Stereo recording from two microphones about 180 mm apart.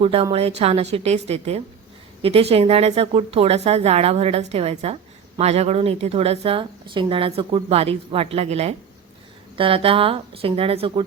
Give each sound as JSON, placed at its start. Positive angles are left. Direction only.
{"t": 0.0, "sound": "speech", "side_deg": -35}